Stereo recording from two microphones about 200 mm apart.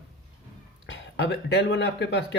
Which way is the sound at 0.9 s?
60° left (ahead or behind).